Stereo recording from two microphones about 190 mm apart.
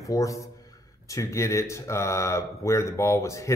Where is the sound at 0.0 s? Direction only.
15° left (ahead or behind).